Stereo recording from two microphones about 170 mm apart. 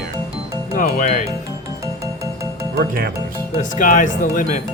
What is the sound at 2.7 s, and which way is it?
Speech, 65° right (ahead or behind).